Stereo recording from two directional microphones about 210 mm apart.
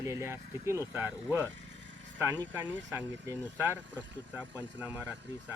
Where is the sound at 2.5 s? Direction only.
10° right (ahead or behind).